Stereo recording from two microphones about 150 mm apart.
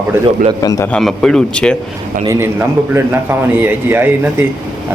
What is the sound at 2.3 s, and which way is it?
Speech, 15° right (ahead or behind).